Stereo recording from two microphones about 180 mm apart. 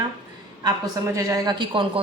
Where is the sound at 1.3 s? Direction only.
20° right (ahead or behind).